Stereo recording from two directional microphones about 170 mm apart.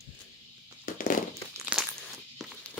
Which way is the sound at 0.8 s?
55° left (ahead or behind).